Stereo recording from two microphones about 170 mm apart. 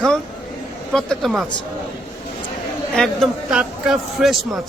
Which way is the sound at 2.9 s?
Centre (ahead or behind).